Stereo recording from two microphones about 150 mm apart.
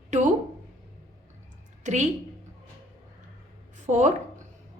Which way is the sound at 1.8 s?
50° right (ahead or behind).